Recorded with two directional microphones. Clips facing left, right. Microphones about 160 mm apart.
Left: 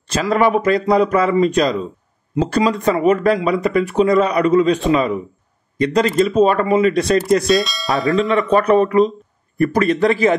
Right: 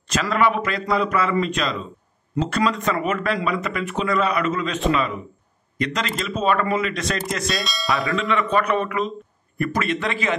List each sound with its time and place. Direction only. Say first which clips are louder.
0.1 s a man's voice: left 5 dB; 35° left (ahead or behind)
2.3 s speech: left 5 dB; 20° left (ahead or behind)
2.7 s a man's voice: left 8 dB; 35° left (ahead or behind)
7.5 s speech: left 9 dB; centre (ahead or behind)
8.2 s a man's voice: left 7 dB; 35° left (ahead or behind)